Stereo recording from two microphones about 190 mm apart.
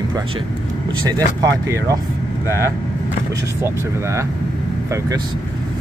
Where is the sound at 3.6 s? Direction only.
15° right (ahead or behind).